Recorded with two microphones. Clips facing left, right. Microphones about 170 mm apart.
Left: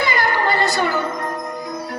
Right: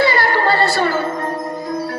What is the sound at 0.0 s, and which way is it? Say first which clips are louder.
Music: right 4 dB; 20° left (ahead or behind).